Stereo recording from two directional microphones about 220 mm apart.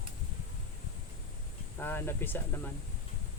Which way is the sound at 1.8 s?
10° left (ahead or behind).